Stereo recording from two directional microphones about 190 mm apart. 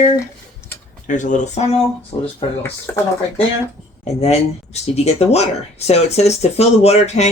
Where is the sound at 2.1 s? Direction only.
20° left (ahead or behind).